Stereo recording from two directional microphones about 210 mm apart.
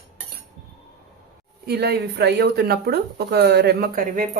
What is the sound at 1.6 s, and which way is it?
Speech, 50° right (ahead or behind).